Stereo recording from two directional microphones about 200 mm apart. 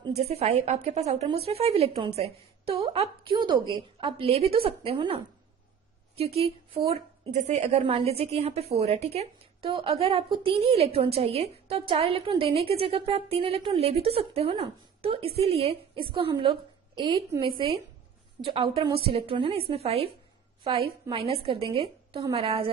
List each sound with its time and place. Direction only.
0.1 s a woman's voice: 30° right (ahead or behind)
18.9 s a woman's voice: 30° right (ahead or behind)